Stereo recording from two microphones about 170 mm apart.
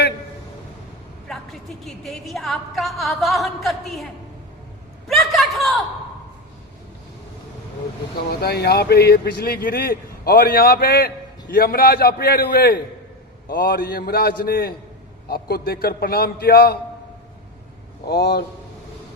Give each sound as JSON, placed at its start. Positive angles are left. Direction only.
{"t": 1.3, "sound": "a woman's voice", "side_deg": 0}
{"t": 5.0, "sound": "a sound", "side_deg": 0}
{"t": 8.3, "sound": "speech", "side_deg": 70}
{"t": 18.1, "sound": "a man's voice", "side_deg": 65}